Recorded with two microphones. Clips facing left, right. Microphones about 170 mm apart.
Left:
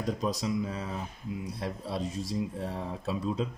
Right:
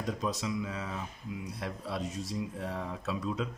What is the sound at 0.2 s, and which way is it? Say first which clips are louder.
Speech: left 3 dB; 35° left (ahead or behind).